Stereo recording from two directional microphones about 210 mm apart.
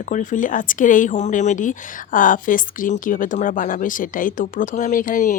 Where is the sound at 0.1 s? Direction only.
40° left (ahead or behind).